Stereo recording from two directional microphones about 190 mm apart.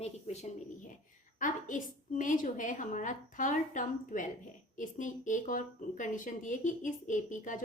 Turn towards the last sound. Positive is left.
turn(degrees=40)  # may be behind; listen again after turning